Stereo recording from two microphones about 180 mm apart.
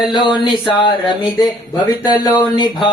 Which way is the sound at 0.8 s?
25° left (ahead or behind).